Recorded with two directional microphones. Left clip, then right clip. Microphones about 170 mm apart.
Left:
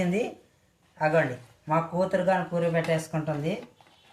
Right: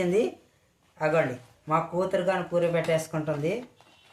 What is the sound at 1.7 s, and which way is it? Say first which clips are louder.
Speech: even; 20° right (ahead or behind).